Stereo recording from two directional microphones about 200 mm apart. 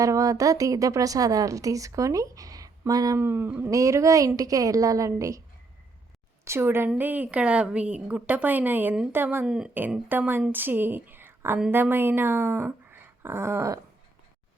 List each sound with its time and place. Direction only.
0.0 s a woman's voice: 15° right (ahead or behind)
6.4 s a woman's voice: 10° right (ahead or behind)